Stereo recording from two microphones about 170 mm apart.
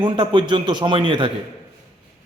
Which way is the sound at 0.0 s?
25° right (ahead or behind).